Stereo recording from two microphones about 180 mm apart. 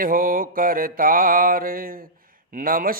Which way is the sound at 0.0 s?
50° right (ahead or behind).